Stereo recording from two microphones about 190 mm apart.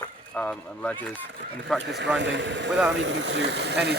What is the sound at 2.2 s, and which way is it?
Speech, 70° right (ahead or behind).